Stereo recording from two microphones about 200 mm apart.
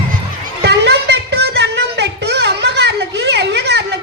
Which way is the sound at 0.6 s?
55° right (ahead or behind).